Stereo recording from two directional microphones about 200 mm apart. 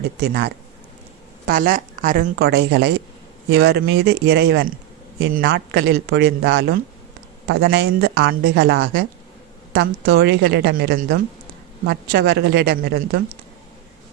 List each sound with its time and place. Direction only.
0.2 s a woman's voice: 55° right (ahead or behind)
1.5 s speech: 45° right (ahead or behind); by 8.3 s 75° right (ahead or behind)
8.3 s a woman's voice: 55° right (ahead or behind)